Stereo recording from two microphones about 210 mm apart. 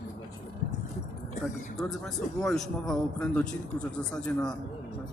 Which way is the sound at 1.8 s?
Centre (ahead or behind).